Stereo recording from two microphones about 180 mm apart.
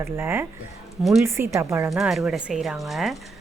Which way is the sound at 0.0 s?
15° right (ahead or behind).